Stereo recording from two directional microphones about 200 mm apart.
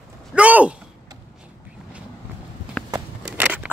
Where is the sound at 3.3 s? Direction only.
5° right (ahead or behind).